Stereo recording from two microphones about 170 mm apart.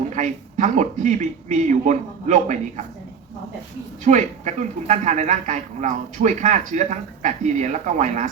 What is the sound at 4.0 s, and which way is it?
Speech, 45° right (ahead or behind).